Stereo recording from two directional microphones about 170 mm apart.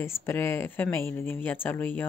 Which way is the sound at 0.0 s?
15° left (ahead or behind).